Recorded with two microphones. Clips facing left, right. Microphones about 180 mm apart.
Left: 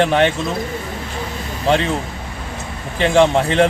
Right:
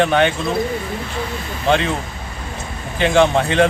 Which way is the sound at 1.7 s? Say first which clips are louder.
Even; 35° left (ahead or behind).